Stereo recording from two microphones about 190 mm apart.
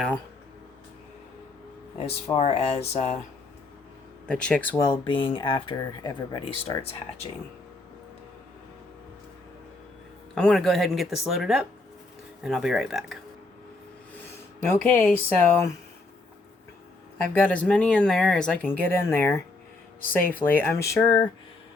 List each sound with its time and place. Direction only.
2.0 s speech: 35° left (ahead or behind)
4.3 s speech: 5° left (ahead or behind)
4.8 s speech: 25° left (ahead or behind)
10.3 s speech: 5° left (ahead or behind)
14.9 s speech: 10° left (ahead or behind)
17.3 s speech: 5° left (ahead or behind)